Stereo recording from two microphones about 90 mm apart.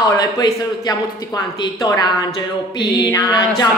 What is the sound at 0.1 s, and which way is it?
Speech, 45° left (ahead or behind).